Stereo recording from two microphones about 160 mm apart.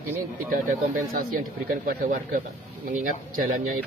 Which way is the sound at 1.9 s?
65° right (ahead or behind).